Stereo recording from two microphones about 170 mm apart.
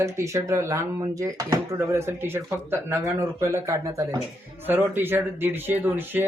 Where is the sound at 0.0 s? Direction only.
15° right (ahead or behind).